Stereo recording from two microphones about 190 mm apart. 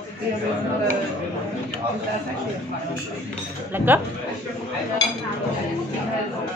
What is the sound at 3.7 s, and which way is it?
Speech, 10° right (ahead or behind).